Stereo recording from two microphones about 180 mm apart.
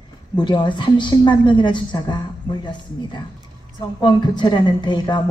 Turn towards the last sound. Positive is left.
turn(degrees=25)  # may be behind; listen again after turning